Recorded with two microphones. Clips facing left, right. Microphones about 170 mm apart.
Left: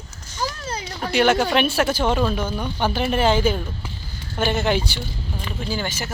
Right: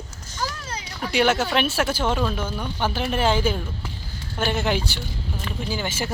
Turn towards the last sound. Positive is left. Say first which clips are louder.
# left 1 dB
turn(degrees=-10)  # may be behind; listen again after turning